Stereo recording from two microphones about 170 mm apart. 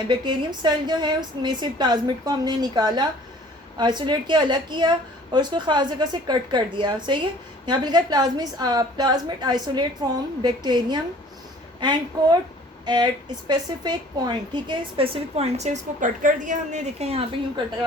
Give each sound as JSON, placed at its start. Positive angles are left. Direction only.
{"t": 0.1, "sound": "a woman's voice", "side_deg": -25}